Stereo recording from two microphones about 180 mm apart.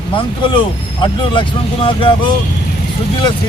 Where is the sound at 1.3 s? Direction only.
25° left (ahead or behind).